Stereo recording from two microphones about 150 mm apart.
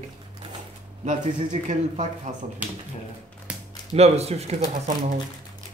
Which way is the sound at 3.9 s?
45° right (ahead or behind).